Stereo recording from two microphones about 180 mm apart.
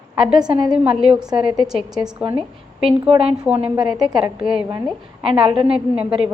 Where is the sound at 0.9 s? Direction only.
5° right (ahead or behind).